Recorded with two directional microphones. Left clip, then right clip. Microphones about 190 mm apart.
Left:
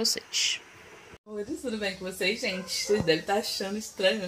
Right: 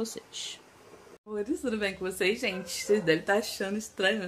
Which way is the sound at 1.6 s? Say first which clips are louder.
Right 1 dB; 20° right (ahead or behind).